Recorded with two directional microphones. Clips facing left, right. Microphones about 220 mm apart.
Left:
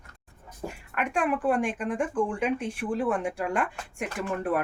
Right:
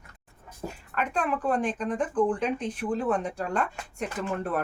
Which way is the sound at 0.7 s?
15° left (ahead or behind).